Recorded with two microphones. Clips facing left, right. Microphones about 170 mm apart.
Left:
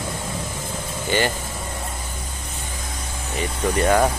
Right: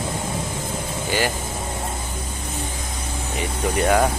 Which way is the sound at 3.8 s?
5° right (ahead or behind).